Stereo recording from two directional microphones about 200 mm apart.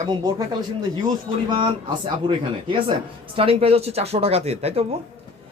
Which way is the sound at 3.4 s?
30° right (ahead or behind).